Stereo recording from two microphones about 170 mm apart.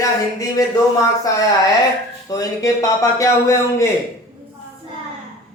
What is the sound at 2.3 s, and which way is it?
Speech, 20° left (ahead or behind).